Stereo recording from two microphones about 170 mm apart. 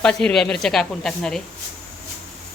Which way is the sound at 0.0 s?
5° left (ahead or behind).